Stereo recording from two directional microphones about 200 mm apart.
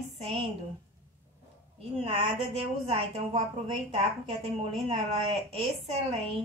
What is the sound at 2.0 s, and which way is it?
A woman's voice, 30° right (ahead or behind).